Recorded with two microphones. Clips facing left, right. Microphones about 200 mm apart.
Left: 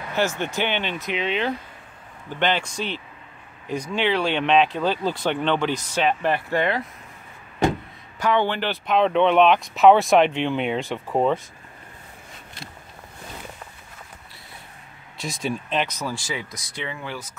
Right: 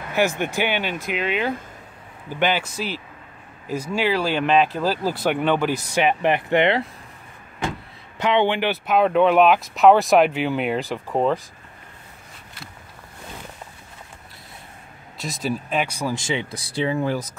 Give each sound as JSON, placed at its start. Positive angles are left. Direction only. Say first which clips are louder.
{"t": 0.1, "sound": "speech", "louder": "right 3 dB", "side_deg": -10}
{"t": 8.2, "sound": "speech", "louder": "right 2 dB", "side_deg": -20}
{"t": 15.1, "sound": "speech", "louder": "right 1 dB", "side_deg": 0}
{"t": 16.2, "sound": "speech", "louder": "right 5 dB", "side_deg": -25}